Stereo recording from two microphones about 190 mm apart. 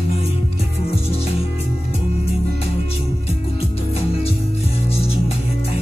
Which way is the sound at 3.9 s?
30° left (ahead or behind).